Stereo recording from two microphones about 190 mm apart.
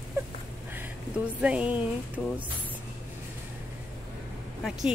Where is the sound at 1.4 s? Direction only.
5° right (ahead or behind).